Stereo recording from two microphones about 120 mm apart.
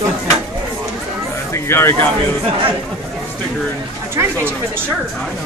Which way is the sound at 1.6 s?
20° left (ahead or behind).